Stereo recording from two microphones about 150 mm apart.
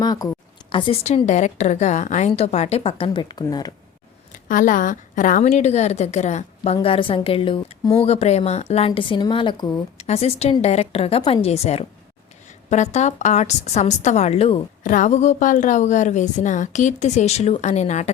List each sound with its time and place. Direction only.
0.0 s a sound: 25° left (ahead or behind)
0.7 s a woman's voice: 35° left (ahead or behind)
4.4 s a woman's voice: 60° left (ahead or behind)
6.8 s a woman's voice: 40° left (ahead or behind)
8.9 s a woman's voice: 35° left (ahead or behind)
10.0 s a woman's voice: 45° left (ahead or behind)
14.8 s a woman's voice: 60° left (ahead or behind)